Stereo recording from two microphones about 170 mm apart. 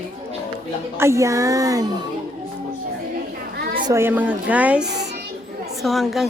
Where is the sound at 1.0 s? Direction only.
15° right (ahead or behind).